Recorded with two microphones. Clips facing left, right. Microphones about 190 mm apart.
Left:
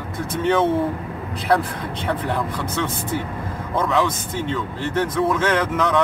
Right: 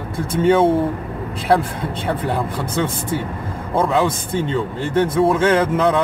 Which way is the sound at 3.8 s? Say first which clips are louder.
Right 3 dB; 30° right (ahead or behind).